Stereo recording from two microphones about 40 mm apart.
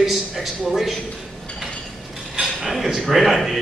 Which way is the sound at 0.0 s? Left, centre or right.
Centre.